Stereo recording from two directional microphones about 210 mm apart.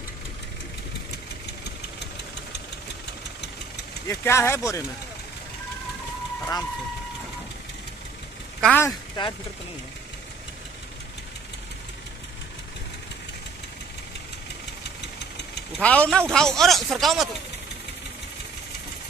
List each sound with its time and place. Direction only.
4.1 s speech: 10° left (ahead or behind)
8.5 s speech: 5° left (ahead or behind)
8.8 s speech: 20° left (ahead or behind)
15.0 s engine knocking: 55° left (ahead or behind)
15.8 s speech: 5° left (ahead or behind)